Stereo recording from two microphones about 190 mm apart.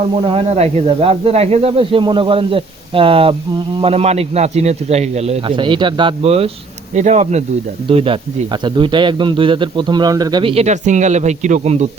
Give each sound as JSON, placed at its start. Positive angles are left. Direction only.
{"t": 0.2, "sound": "speech", "side_deg": -30}